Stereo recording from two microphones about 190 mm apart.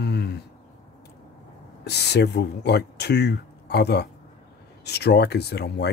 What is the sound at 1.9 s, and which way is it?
Speech, 60° left (ahead or behind).